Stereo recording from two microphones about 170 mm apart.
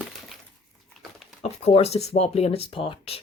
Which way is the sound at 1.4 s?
40° left (ahead or behind).